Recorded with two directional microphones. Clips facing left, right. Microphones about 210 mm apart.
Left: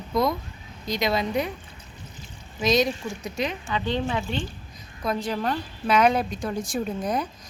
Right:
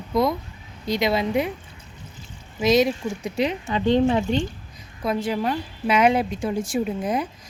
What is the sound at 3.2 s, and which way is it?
Speech, 30° right (ahead or behind).